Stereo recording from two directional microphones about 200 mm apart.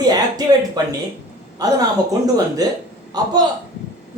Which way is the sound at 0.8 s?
20° right (ahead or behind).